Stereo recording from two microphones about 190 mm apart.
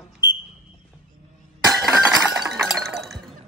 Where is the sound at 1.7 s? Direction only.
Centre (ahead or behind).